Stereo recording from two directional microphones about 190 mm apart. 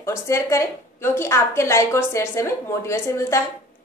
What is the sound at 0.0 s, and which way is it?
A woman's voice, 15° left (ahead or behind).